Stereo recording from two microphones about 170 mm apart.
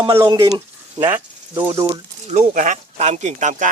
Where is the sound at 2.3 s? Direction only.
40° right (ahead or behind).